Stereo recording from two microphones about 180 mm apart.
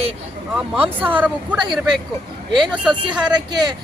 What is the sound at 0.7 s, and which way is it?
Speech, 10° right (ahead or behind).